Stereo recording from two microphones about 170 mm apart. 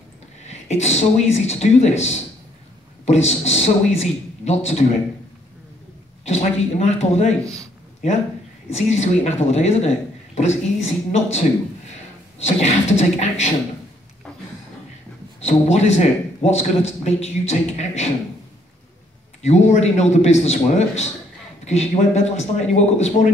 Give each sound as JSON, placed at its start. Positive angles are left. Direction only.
{"t": 0.4, "sound": "a man's voice", "side_deg": 40}
{"t": 6.2, "sound": "a man's voice", "side_deg": 40}
{"t": 7.4, "sound": "a man's voice", "side_deg": -20}
{"t": 8.7, "sound": "a man's voice", "side_deg": 40}
{"t": 15.4, "sound": "a man's voice", "side_deg": 40}
{"t": 19.4, "sound": "a man's voice", "side_deg": 40}